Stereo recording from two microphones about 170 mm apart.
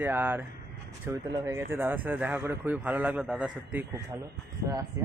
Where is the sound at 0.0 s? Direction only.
10° right (ahead or behind).